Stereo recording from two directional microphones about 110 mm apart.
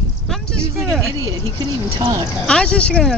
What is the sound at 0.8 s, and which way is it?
Speech, 5° left (ahead or behind).